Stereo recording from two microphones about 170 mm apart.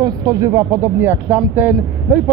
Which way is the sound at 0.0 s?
20° right (ahead or behind).